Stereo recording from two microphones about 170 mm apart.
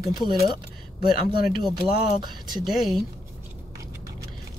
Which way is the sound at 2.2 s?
25° right (ahead or behind).